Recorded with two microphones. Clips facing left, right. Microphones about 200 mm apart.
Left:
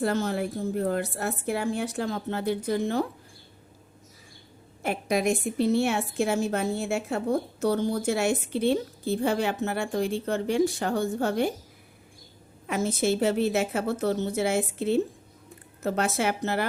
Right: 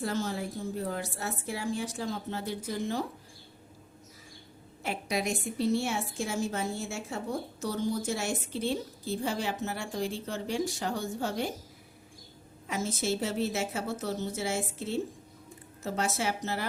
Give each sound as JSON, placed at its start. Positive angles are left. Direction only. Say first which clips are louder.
{"t": 0.0, "sound": "a woman's voice", "louder": "left 6 dB", "side_deg": 60}
{"t": 4.8, "sound": "a woman's voice", "louder": "left 6 dB", "side_deg": 50}
{"t": 12.6, "sound": "a woman's voice", "louder": "left 6 dB", "side_deg": 60}